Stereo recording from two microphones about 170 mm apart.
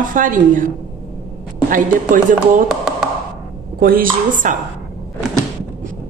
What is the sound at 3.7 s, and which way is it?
Speech, 60° right (ahead or behind).